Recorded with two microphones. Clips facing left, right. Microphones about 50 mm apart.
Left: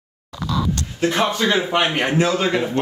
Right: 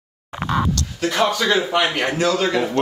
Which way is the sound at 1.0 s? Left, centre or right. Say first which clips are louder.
Even; left.